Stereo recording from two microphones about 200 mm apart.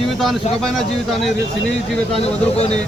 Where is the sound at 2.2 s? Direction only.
30° left (ahead or behind).